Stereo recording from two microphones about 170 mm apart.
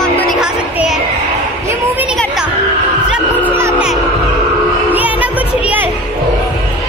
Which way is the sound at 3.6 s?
15° right (ahead or behind).